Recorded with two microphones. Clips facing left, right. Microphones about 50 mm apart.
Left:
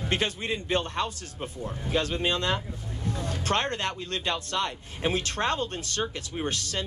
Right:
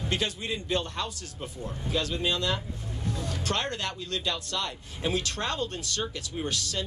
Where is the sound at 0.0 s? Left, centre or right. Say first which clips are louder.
Left 2 dB; left.